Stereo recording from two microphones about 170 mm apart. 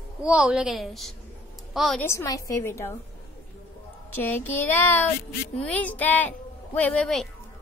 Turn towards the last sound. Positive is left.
turn(degrees=5)  # may be behind; listen again after turning